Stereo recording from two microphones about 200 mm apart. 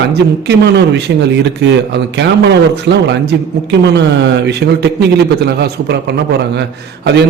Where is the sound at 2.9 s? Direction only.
60° right (ahead or behind).